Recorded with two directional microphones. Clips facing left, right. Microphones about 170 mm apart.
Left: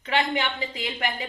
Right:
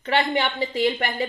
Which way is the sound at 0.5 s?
40° right (ahead or behind).